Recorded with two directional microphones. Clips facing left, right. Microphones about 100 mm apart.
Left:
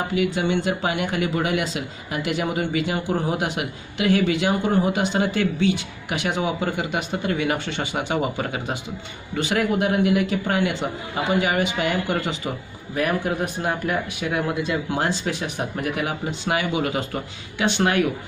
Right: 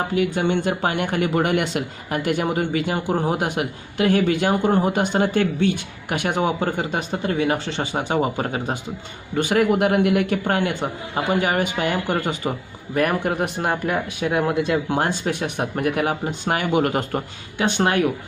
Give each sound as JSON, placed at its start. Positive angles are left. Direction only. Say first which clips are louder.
{"t": 0.1, "sound": "speech", "louder": "even", "side_deg": -45}
{"t": 9.3, "sound": "speech", "louder": "right 4 dB", "side_deg": -50}
{"t": 9.7, "sound": "speech", "louder": "right 2 dB", "side_deg": -65}
{"t": 13.8, "sound": "speech", "louder": "right 2 dB", "side_deg": -35}